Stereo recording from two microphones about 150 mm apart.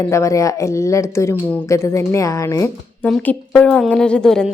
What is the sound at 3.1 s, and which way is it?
A woman's voice, 5° left (ahead or behind).